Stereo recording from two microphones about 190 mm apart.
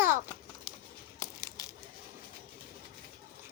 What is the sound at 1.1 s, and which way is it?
Crushing, 15° left (ahead or behind).